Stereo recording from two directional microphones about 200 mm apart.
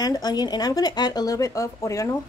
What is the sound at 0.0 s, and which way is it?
Speech, 20° left (ahead or behind).